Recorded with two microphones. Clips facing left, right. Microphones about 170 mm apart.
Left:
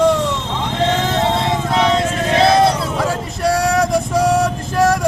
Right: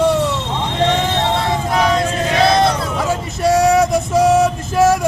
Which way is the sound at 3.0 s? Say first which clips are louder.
Right 1 dB; centre (ahead or behind).